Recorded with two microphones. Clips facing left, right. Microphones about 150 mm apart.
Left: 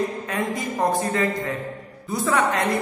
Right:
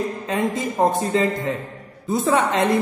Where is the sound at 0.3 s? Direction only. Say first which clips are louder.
Right 3 dB; 25° right (ahead or behind).